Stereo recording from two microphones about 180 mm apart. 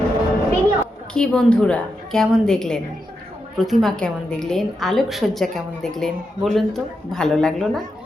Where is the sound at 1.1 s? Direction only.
5° left (ahead or behind).